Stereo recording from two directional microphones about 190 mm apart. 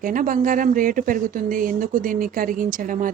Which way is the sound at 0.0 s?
45° right (ahead or behind).